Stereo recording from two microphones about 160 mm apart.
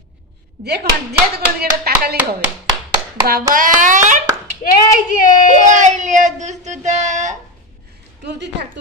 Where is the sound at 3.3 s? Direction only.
60° right (ahead or behind).